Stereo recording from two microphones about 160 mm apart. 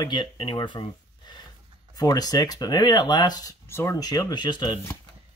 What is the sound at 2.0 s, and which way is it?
Speech, 25° left (ahead or behind).